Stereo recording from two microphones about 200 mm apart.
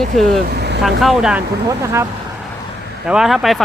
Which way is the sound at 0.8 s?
Centre (ahead or behind).